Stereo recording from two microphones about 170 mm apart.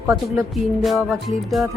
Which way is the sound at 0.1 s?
20° right (ahead or behind).